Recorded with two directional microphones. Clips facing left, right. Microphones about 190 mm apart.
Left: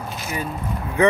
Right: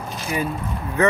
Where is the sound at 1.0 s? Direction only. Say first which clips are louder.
Left 2 dB; 15° left (ahead or behind).